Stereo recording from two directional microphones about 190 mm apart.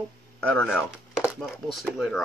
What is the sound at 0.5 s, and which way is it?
Speech, 5° left (ahead or behind).